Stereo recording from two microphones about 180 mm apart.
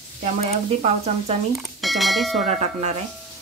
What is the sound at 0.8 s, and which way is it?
Speech, 35° right (ahead or behind).